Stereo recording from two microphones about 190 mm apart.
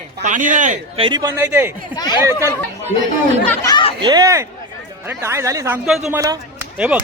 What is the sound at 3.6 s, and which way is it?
Chatter, 25° left (ahead or behind).